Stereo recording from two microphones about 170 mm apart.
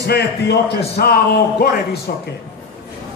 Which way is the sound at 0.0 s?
75° left (ahead or behind).